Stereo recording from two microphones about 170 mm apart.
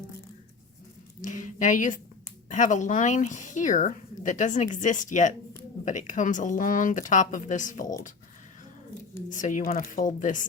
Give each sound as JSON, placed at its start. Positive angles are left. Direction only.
{"t": 1.2, "sound": "a woman's voice", "side_deg": 50}
{"t": 9.3, "sound": "speech", "side_deg": 50}